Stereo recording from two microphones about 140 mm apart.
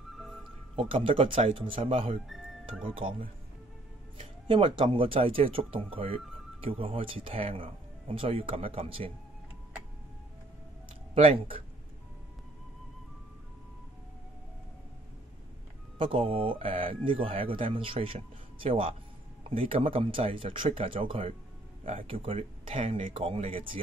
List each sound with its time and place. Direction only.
0.1 s music: centre (ahead or behind)
0.7 s speech: 40° right (ahead or behind)
2.2 s speech: centre (ahead or behind)
2.8 s speech: 40° right (ahead or behind)
11.1 s speech: 40° right (ahead or behind)
16.0 s speech: 40° right (ahead or behind)